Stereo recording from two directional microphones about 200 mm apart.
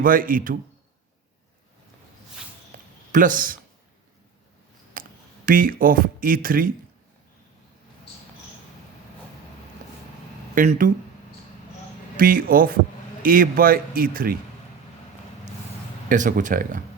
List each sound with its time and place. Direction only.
0.0 s speech: 45° right (ahead or behind)
2.7 s a sound: 40° right (ahead or behind)
3.1 s speech: 40° right (ahead or behind)
4.9 s a sound: 45° right (ahead or behind)
5.5 s speech: 45° right (ahead or behind)
10.5 s speech: 40° right (ahead or behind)
12.1 s speech: 45° right (ahead or behind)
16.0 s speech: 40° right (ahead or behind)